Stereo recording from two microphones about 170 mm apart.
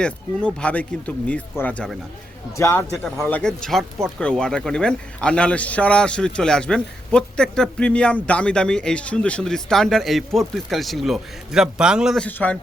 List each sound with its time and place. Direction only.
0.0 s a man's voice: 5° left (ahead or behind)